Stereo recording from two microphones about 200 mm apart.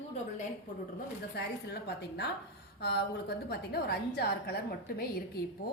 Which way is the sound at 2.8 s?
55° left (ahead or behind).